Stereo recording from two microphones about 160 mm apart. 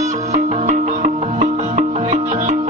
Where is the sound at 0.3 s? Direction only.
45° right (ahead or behind).